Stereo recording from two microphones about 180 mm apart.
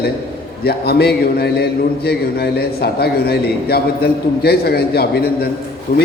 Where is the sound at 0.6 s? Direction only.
60° left (ahead or behind).